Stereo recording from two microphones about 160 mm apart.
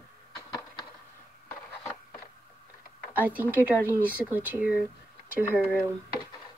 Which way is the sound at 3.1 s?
10° right (ahead or behind).